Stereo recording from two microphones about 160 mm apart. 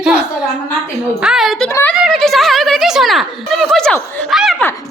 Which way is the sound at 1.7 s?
10° left (ahead or behind).